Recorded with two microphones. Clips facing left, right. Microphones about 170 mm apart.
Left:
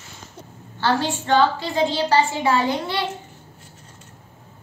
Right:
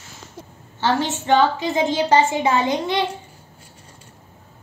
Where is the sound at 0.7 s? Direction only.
15° right (ahead or behind).